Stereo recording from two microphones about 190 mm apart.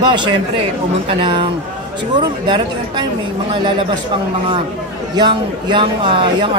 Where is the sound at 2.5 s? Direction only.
25° right (ahead or behind).